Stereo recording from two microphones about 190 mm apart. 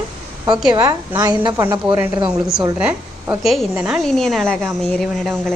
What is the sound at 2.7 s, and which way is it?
A woman's voice, 5° right (ahead or behind).